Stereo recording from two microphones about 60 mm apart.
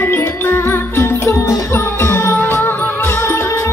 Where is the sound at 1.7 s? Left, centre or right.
Left.